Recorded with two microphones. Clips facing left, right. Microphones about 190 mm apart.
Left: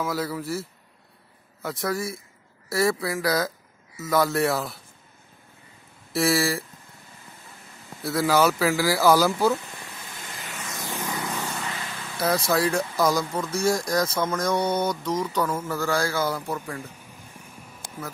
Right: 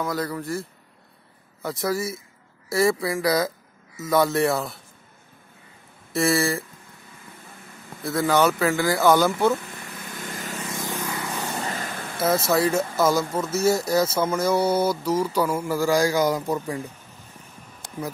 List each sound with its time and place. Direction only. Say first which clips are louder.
0.0 s speech: right 1 dB; 5° left (ahead or behind)
6.1 s speech: right 1 dB; centre (ahead or behind)
8.0 s speech: right 1 dB; centre (ahead or behind)
10.1 s vehicle: right 7 dB; 45° right (ahead or behind)
11.6 s vehicle: right 4 dB; 45° right (ahead or behind)
12.2 s speech: right 2 dB; centre (ahead or behind)